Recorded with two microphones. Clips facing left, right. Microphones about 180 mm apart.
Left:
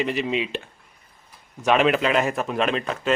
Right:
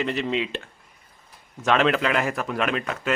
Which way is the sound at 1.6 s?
15° left (ahead or behind).